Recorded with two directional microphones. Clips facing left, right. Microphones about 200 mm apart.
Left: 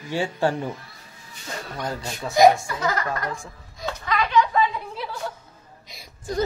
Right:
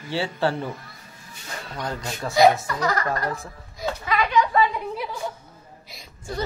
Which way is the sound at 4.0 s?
10° right (ahead or behind).